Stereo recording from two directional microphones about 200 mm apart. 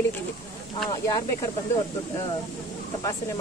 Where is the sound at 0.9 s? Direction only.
15° left (ahead or behind).